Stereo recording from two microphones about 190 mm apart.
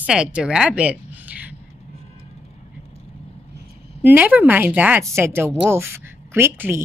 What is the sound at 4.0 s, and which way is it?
A woman's voice, 10° right (ahead or behind).